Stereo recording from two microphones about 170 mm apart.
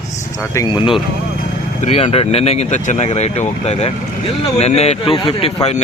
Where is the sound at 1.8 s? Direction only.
40° left (ahead or behind).